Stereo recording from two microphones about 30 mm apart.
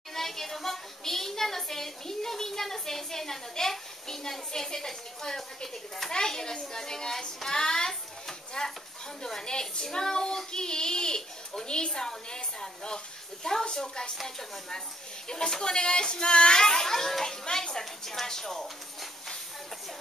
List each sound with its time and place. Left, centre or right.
0.1 s a child's voice: centre
4.5 s a child's voice: left
8.3 s a sound: centre
9.2 s a child's voice: left
11.9 s speech: centre
15.2 s a child's voice: left